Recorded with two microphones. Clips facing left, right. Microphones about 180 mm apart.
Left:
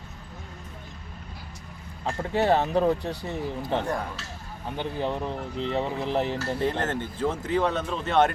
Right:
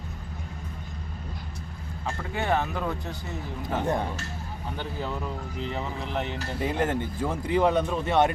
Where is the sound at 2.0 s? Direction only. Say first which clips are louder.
Left 5 dB; 35° left (ahead or behind).